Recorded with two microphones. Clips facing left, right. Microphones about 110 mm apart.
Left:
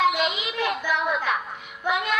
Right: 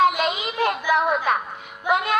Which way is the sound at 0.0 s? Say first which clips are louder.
Right 3 dB; 45° right (ahead or behind).